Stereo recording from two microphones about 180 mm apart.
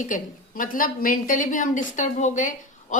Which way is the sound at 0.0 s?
50° left (ahead or behind).